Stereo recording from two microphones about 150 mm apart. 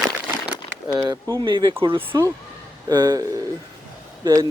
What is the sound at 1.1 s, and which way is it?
Speech, 25° right (ahead or behind).